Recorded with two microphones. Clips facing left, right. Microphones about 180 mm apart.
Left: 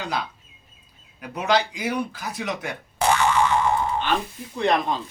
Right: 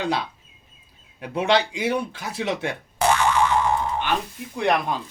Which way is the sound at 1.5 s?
25° right (ahead or behind).